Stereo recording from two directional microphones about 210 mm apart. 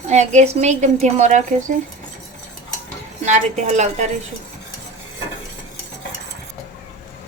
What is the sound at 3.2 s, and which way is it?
Speech, 35° right (ahead or behind).